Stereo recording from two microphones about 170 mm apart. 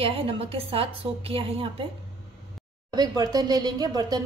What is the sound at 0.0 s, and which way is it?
A woman's voice, 35° right (ahead or behind).